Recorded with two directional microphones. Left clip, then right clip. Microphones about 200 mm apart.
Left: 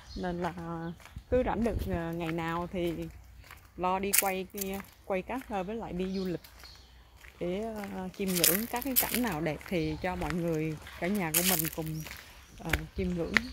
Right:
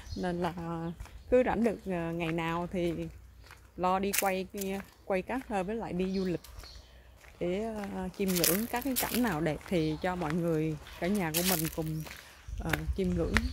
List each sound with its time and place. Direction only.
0.2 s speech: 5° right (ahead or behind)
9.3 s speech: 15° right (ahead or behind)
10.1 s speech: centre (ahead or behind)